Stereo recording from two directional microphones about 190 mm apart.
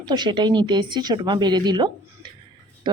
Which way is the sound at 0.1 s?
25° right (ahead or behind).